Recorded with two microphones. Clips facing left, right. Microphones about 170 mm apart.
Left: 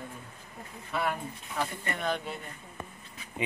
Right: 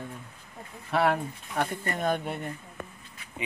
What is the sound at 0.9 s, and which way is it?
Speech, 75° right (ahead or behind).